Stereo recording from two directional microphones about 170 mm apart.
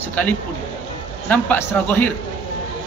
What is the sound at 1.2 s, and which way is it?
Speech, 10° left (ahead or behind).